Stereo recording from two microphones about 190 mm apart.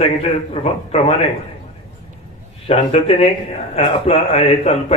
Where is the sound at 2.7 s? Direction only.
30° left (ahead or behind).